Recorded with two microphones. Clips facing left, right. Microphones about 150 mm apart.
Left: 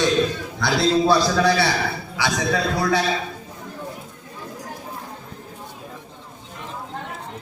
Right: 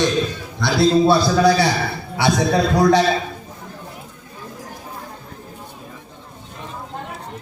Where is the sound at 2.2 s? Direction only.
65° right (ahead or behind).